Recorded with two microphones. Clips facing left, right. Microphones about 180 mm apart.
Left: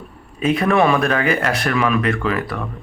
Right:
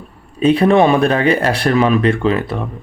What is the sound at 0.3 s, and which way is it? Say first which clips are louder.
A man's voice: right 5 dB; 30° right (ahead or behind).